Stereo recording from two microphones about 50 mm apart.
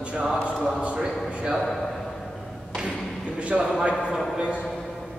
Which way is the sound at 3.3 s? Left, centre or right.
Right.